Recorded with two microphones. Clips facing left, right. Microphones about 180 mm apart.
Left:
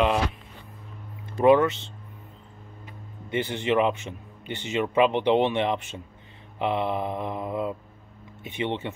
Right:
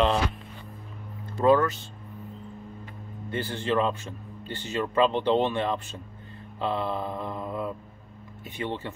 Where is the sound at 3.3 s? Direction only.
20° left (ahead or behind).